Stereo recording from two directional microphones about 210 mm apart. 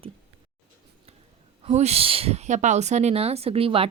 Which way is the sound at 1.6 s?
30° right (ahead or behind).